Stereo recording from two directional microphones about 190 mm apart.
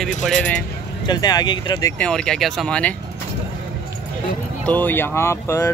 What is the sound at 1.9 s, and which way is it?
Speech, 5° left (ahead or behind).